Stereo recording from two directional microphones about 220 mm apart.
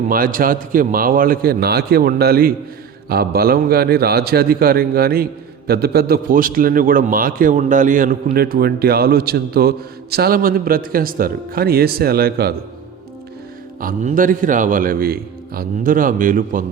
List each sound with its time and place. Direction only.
0.1 s a man's voice: 40° right (ahead or behind)
13.8 s a man's voice: 40° right (ahead or behind)